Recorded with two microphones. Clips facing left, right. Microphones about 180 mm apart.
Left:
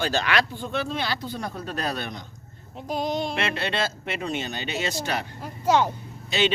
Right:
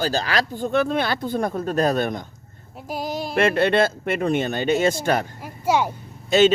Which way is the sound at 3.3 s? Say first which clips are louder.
Right 9 dB; 50° right (ahead or behind).